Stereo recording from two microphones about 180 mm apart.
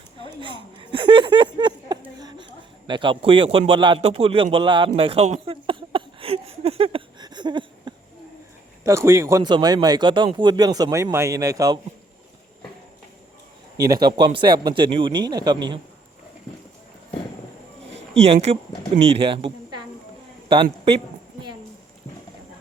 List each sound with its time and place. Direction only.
0.3 s a man's voice: 25° right (ahead or behind)
4.9 s a sound: 30° right (ahead or behind)
8.8 s speech: 15° right (ahead or behind)
13.8 s speech: 20° right (ahead or behind)
18.5 s a woman's voice: 35° right (ahead or behind)